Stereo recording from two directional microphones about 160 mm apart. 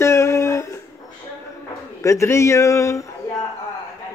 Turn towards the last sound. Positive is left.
turn(degrees=20)  # may be behind; listen again after turning